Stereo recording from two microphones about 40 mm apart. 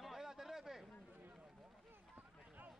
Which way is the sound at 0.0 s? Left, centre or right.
Centre.